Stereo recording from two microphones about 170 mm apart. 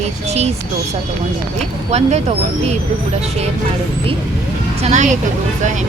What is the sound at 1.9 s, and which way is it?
Speech, 40° right (ahead or behind).